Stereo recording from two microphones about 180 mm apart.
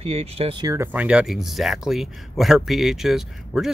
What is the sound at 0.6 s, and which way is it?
Speech, 15° right (ahead or behind).